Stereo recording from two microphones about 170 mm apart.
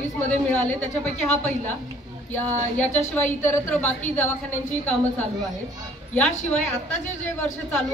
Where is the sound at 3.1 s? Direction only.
10° left (ahead or behind).